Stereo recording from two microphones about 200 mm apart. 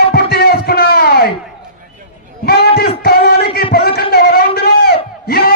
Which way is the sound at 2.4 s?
50° left (ahead or behind).